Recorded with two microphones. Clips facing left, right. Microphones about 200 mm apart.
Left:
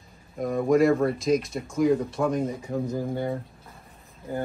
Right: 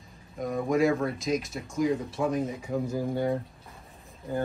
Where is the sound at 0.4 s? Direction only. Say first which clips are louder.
Left 4 dB; centre (ahead or behind).